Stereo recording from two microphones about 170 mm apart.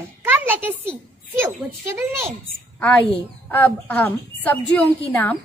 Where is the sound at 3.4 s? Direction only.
10° left (ahead or behind).